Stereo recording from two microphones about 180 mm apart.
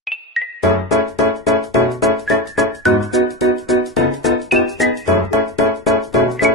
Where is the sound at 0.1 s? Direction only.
Centre (ahead or behind).